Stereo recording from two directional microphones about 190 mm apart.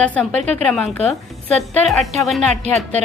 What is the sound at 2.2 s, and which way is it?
Speech, centre (ahead or behind).